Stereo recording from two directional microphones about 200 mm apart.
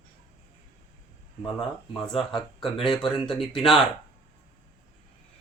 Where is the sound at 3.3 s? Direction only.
Centre (ahead or behind).